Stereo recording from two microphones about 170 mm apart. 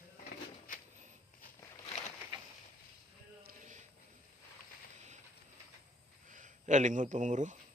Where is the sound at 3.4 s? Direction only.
55° right (ahead or behind).